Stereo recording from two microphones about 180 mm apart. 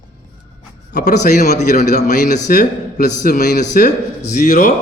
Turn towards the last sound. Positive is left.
turn(degrees=45)  # may be behind; listen again after turning